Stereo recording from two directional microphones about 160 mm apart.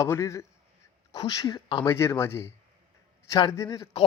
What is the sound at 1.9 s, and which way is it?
A man's voice, 15° left (ahead or behind).